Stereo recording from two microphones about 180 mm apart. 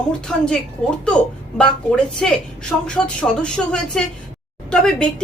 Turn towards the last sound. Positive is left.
turn(degrees=5)  # may be behind; listen again after turning